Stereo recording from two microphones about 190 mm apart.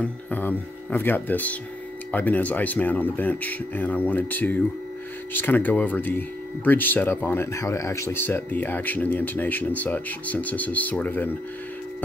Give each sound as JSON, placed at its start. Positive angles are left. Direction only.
{"t": 0.0, "sound": "speech", "side_deg": 10}